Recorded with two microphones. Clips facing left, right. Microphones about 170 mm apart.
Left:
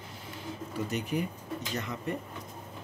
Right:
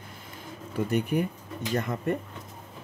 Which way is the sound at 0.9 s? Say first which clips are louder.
Right 7 dB; 55° right (ahead or behind).